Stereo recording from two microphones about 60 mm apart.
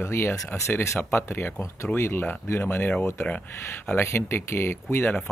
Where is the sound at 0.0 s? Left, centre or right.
Left.